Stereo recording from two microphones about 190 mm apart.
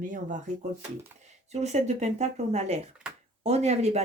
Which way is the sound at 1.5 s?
35° right (ahead or behind).